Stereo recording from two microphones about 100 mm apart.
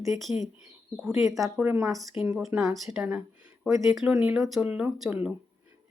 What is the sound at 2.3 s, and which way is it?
Speech, centre (ahead or behind).